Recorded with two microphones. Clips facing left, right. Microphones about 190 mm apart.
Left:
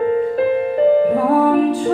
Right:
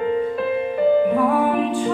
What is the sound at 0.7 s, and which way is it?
Music, 40° left (ahead or behind).